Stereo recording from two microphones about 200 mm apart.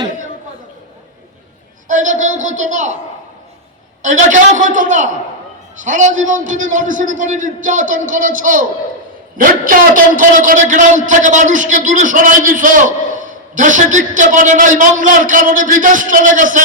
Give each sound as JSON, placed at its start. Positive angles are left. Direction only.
{"t": 1.9, "sound": "a man's voice", "side_deg": -40}
{"t": 4.0, "sound": "a man's voice", "side_deg": -40}